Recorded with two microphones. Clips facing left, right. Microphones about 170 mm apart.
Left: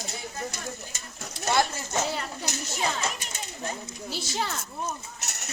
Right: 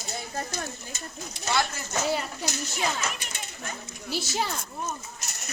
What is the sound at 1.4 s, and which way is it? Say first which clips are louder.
Speech: left 3 dB; 50° left (ahead or behind).